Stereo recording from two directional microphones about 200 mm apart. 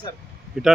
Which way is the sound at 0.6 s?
Centre (ahead or behind).